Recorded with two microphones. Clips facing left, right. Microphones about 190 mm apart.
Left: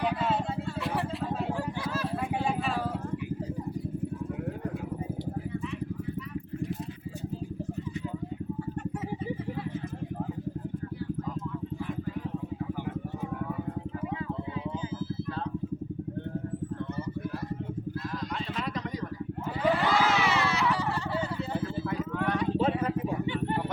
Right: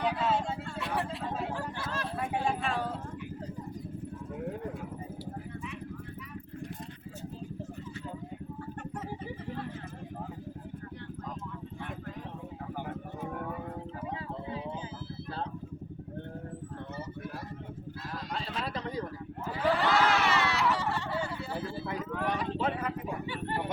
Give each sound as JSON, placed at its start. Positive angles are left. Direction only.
{"t": 0.0, "sound": "vehicle", "side_deg": 0}
{"t": 19.7, "sound": "vehicle", "side_deg": 0}
{"t": 22.1, "sound": "vehicle", "side_deg": 0}
{"t": 22.5, "sound": "vehicle", "side_deg": 30}